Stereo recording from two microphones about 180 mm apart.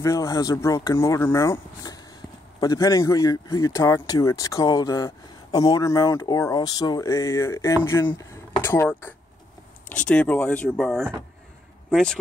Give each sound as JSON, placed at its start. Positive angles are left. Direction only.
{"t": 0.0, "sound": "speech", "side_deg": 15}